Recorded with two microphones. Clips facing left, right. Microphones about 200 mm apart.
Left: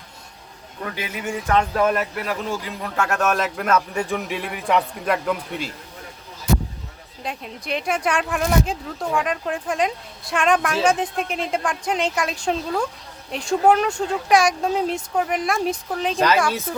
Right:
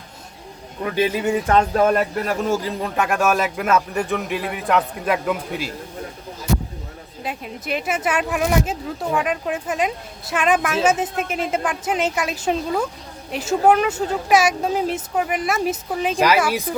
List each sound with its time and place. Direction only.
0.9 s speech: 30° right (ahead or behind)
2.8 s speech: 20° right (ahead or behind)
7.2 s speech: 5° right (ahead or behind)